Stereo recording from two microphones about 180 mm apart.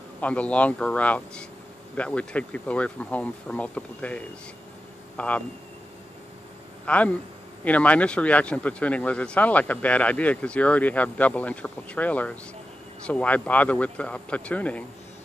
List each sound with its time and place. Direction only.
0.2 s a man's voice: 5° left (ahead or behind)
6.9 s a man's voice: 5° left (ahead or behind)